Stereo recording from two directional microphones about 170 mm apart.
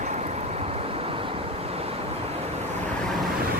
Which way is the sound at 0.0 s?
40° right (ahead or behind).